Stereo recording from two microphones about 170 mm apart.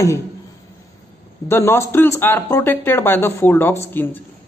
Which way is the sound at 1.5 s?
15° left (ahead or behind).